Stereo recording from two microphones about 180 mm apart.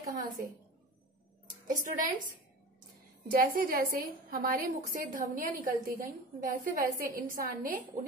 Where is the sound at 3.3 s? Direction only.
50° right (ahead or behind).